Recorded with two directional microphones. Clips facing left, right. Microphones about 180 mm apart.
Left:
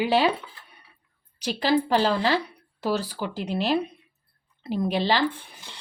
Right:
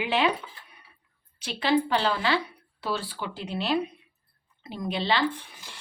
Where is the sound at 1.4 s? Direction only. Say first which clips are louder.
Left 2 dB; 40° left (ahead or behind).